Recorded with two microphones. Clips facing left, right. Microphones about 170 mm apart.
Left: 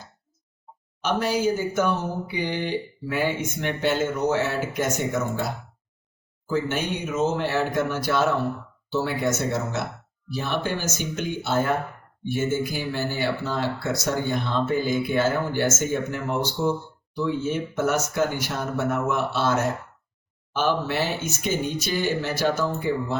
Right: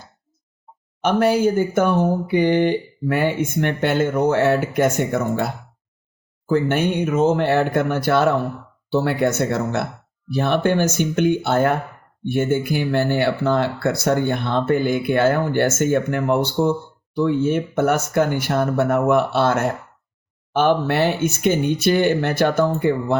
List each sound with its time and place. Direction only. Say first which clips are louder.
1.0 s speech: right 6 dB; 55° right (ahead or behind)
6.5 s speech: right 7 dB; 55° right (ahead or behind)